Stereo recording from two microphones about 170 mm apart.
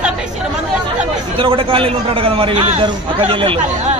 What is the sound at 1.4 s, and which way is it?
A man's voice, 30° right (ahead or behind).